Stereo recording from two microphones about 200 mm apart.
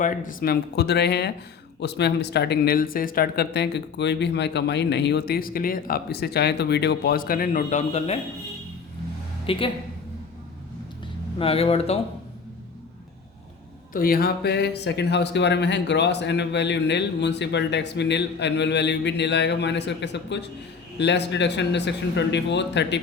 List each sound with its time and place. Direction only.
0.0 s speech: 40° left (ahead or behind)
9.5 s speech: 25° left (ahead or behind)
11.3 s speech: 30° left (ahead or behind)
13.9 s speech: 45° left (ahead or behind)